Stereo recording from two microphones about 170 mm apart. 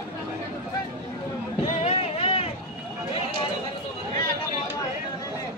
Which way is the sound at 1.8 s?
40° left (ahead or behind).